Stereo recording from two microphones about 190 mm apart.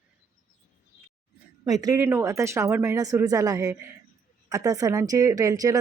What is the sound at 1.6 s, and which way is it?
Speech, 20° right (ahead or behind).